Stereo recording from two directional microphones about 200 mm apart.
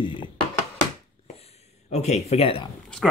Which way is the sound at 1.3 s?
30° left (ahead or behind).